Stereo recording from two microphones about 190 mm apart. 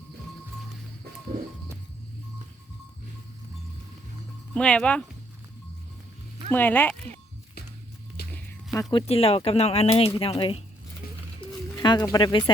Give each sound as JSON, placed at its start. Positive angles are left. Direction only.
{"t": 4.5, "sound": "speech", "side_deg": 5}
{"t": 6.5, "sound": "speech", "side_deg": 10}
{"t": 8.3, "sound": "music", "side_deg": 15}
{"t": 8.9, "sound": "speech", "side_deg": 30}
{"t": 11.0, "sound": "a sound", "side_deg": 50}
{"t": 11.3, "sound": "a sound", "side_deg": 25}